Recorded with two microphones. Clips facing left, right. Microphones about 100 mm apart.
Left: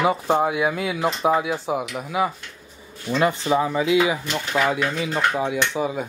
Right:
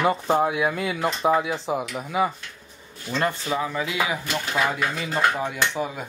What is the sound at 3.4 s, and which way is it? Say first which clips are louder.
Speech: left 6 dB; 20° left (ahead or behind).